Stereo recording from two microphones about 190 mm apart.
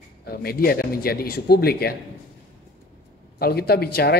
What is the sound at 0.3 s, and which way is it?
A man's voice, 55° left (ahead or behind).